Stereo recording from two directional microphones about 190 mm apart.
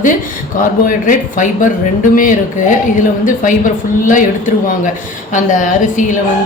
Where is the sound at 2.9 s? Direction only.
45° left (ahead or behind).